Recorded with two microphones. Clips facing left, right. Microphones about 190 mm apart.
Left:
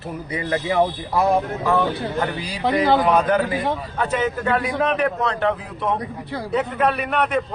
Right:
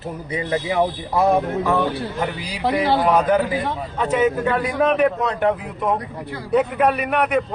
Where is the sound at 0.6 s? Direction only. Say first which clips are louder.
Left 1 dB; 10° right (ahead or behind).